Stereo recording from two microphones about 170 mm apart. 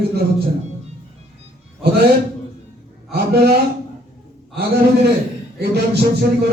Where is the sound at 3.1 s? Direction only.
70° right (ahead or behind).